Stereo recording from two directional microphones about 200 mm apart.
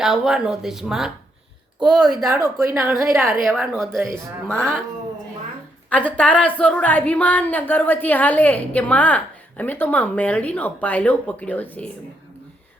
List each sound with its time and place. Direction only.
0.0 s speech: 5° right (ahead or behind)
5.9 s a woman's voice: 5° left (ahead or behind)